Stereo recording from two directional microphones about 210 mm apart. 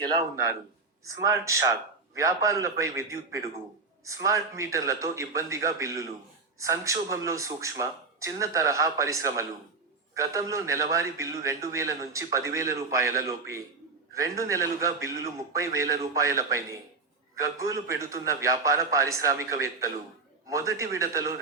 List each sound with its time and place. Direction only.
0.0 s a man's voice: 15° right (ahead or behind)